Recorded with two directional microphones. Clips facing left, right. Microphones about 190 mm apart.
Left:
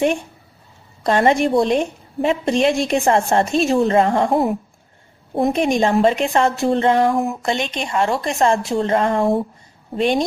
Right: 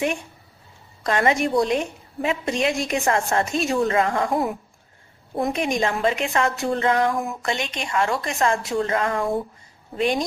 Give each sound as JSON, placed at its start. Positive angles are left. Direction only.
{"t": 1.0, "sound": "a woman's voice", "side_deg": 30}